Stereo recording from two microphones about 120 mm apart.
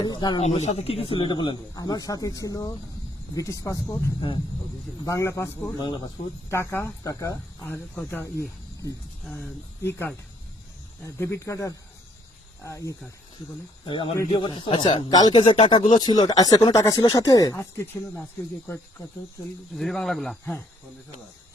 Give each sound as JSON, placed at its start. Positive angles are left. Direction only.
{"t": 0.0, "sound": "speech", "side_deg": 35}
{"t": 0.4, "sound": "speech", "side_deg": 60}
{"t": 6.5, "sound": "speech", "side_deg": 20}
{"t": 7.6, "sound": "speech", "side_deg": 15}
{"t": 13.8, "sound": "speech", "side_deg": 40}
{"t": 17.6, "sound": "speech", "side_deg": 20}
{"t": 19.7, "sound": "speech", "side_deg": 0}